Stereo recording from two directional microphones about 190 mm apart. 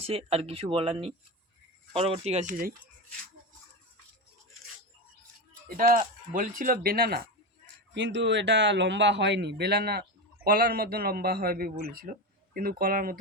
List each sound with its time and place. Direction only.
0.0 s speech: 30° right (ahead or behind)
5.6 s speech: 50° right (ahead or behind)
7.9 s speech: 70° right (ahead or behind); by 13.1 s 50° right (ahead or behind)